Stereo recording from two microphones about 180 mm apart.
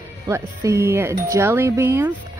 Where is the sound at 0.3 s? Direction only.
15° right (ahead or behind).